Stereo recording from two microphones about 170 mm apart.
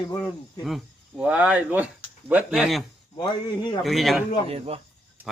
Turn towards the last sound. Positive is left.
turn(degrees=-35)  # may be behind; listen again after turning